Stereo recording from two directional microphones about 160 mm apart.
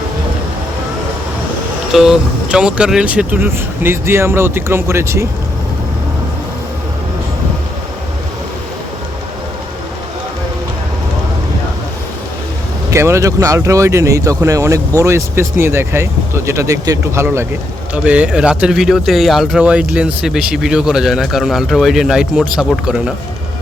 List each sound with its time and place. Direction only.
1.9 s speech: 5° right (ahead or behind)
12.9 s speech: 15° right (ahead or behind)